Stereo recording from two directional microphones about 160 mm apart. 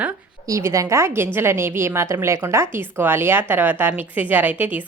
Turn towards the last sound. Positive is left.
turn(degrees=-10)  # may be behind; listen again after turning